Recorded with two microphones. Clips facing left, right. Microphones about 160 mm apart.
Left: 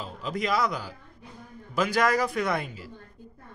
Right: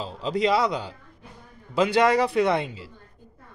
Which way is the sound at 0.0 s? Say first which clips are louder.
Right 7 dB; 30° right (ahead or behind).